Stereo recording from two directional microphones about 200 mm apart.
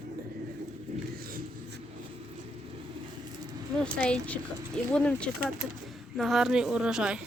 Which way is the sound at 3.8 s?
5° left (ahead or behind).